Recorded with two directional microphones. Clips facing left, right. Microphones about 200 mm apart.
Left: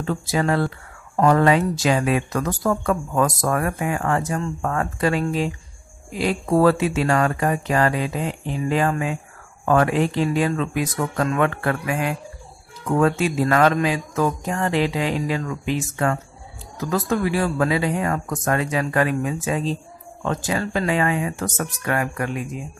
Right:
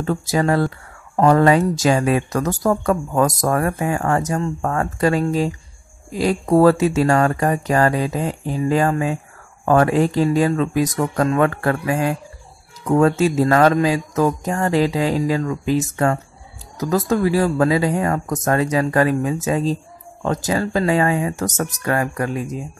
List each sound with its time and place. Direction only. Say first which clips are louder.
0.0 s speech: right 3 dB; 40° right (ahead or behind)